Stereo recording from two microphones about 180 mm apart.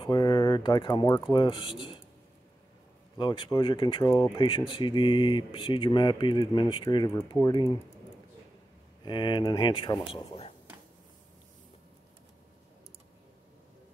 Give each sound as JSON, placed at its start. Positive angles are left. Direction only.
{"t": 0.0, "sound": "speech", "side_deg": 25}
{"t": 3.2, "sound": "speech", "side_deg": 25}
{"t": 9.0, "sound": "speech", "side_deg": 25}